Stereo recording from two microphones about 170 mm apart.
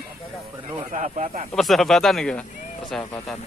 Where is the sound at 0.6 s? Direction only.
35° right (ahead or behind).